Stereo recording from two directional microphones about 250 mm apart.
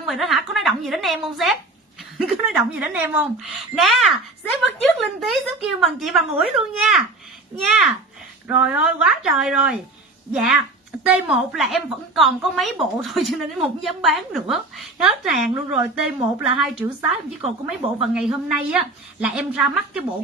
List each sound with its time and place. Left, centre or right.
0.0 s a woman's voice: centre